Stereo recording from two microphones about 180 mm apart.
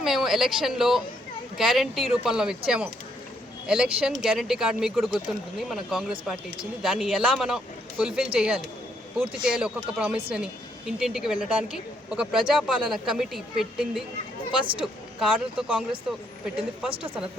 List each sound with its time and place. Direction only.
0.0 s speech: centre (ahead or behind)
14.6 s speech: 30° right (ahead or behind)
15.2 s speech: 5° right (ahead or behind)